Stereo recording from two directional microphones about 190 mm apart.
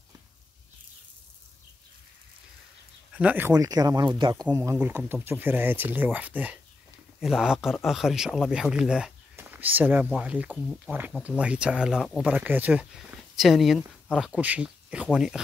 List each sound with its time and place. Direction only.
3.1 s speech: 5° right (ahead or behind); by 4.5 s 20° right (ahead or behind)
4.5 s speech: 10° right (ahead or behind)